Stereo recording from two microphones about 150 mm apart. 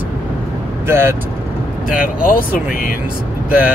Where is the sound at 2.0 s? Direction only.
65° left (ahead or behind).